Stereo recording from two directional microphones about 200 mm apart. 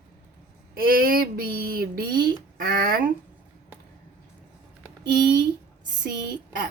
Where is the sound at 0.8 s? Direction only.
45° right (ahead or behind).